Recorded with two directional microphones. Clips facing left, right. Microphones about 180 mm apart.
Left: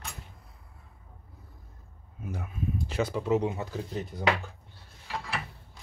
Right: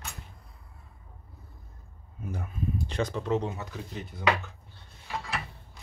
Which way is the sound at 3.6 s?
40° left (ahead or behind).